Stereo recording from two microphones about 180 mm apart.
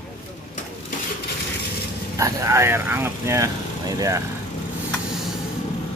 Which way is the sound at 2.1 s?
15° right (ahead or behind).